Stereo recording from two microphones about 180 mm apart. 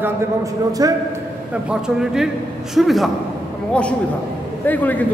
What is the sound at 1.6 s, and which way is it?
A man's voice, 5° right (ahead or behind).